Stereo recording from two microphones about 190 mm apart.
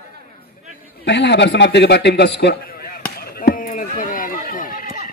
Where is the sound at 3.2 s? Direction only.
50° left (ahead or behind).